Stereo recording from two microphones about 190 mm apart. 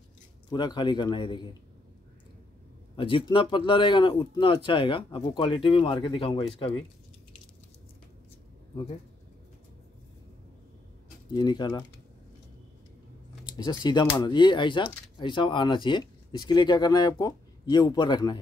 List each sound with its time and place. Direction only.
0.5 s speech: 25° left (ahead or behind)
3.0 s speech: 25° left (ahead or behind)
11.3 s speech: 20° left (ahead or behind)
13.6 s speech: 25° left (ahead or behind)